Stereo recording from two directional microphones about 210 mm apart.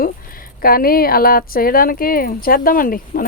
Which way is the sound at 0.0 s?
45° left (ahead or behind).